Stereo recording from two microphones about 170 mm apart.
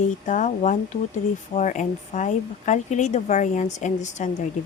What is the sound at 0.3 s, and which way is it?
Speech, 45° left (ahead or behind).